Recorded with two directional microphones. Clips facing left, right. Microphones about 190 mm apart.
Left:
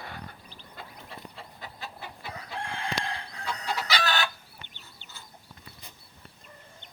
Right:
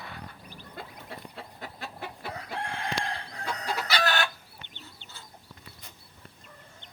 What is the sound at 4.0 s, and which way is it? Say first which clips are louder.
Chicken: right 3 dB; 50° right (ahead or behind).